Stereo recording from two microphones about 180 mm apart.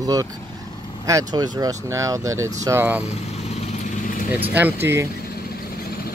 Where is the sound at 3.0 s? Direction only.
35° left (ahead or behind).